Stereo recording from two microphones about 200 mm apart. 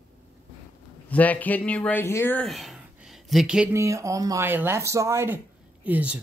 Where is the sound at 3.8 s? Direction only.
15° right (ahead or behind).